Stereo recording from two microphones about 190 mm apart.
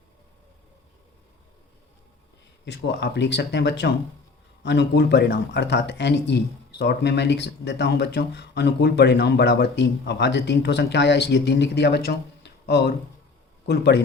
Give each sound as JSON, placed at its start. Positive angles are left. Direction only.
{"t": 2.6, "sound": "speech", "side_deg": 65}